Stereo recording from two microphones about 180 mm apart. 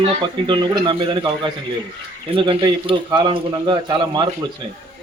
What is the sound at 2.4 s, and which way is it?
A man's voice, 25° right (ahead or behind).